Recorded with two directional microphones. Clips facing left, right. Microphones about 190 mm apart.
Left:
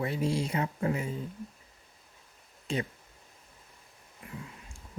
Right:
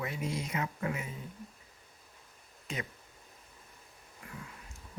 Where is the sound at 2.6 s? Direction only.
30° left (ahead or behind).